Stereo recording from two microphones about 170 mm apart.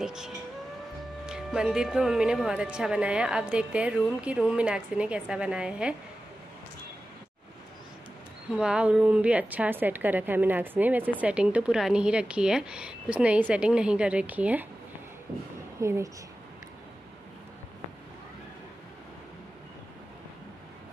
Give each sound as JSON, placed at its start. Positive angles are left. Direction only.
{"t": 0.0, "sound": "speech", "side_deg": -5}
{"t": 8.5, "sound": "a woman's voice", "side_deg": -5}
{"t": 15.8, "sound": "a woman's voice", "side_deg": -15}